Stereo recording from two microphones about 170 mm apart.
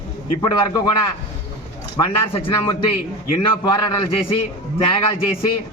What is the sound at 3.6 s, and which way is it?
Speech, 30° left (ahead or behind).